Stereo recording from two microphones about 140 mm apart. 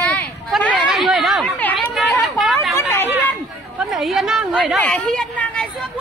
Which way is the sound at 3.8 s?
Centre (ahead or behind).